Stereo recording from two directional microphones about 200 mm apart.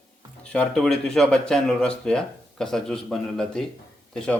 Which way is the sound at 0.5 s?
Centre (ahead or behind).